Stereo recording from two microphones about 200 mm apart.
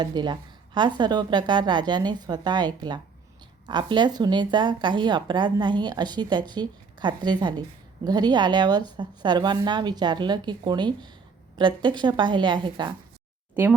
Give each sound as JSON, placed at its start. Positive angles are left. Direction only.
{"t": 0.0, "sound": "speech", "side_deg": -20}